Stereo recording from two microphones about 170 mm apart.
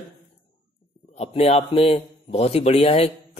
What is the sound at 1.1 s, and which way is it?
A man's voice, 40° left (ahead or behind).